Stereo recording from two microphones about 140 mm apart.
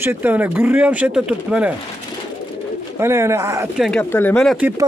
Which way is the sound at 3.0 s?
20° right (ahead or behind).